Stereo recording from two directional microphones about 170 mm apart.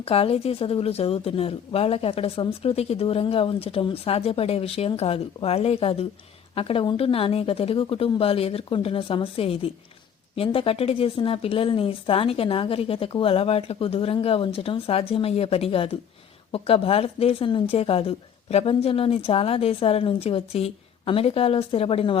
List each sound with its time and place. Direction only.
0.0 s a woman's voice: 35° left (ahead or behind)